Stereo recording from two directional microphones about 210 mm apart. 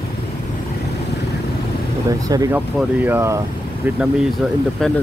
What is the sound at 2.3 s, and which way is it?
Speech, 15° right (ahead or behind).